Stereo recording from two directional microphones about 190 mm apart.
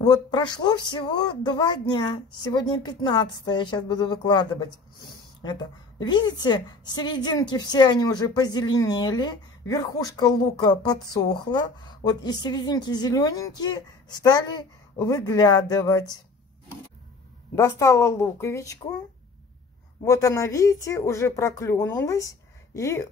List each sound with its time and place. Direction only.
0.0 s a woman's voice: 20° left (ahead or behind)
17.6 s speech: 15° left (ahead or behind)
20.1 s speech: 15° left (ahead or behind)